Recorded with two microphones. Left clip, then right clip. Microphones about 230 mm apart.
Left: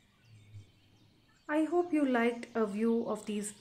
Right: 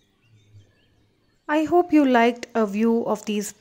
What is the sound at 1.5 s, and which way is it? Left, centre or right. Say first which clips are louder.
A woman's voice: right 11 dB; right.